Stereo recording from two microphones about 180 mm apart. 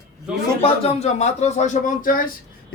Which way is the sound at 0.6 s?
35° left (ahead or behind).